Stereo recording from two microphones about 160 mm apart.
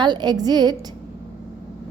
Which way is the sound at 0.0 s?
25° right (ahead or behind).